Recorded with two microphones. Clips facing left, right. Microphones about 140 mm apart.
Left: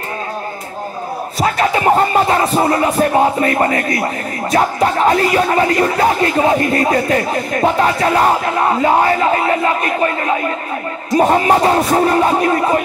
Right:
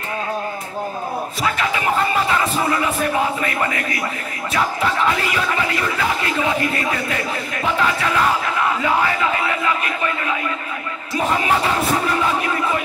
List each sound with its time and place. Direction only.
1.4 s music: 35° left (ahead or behind)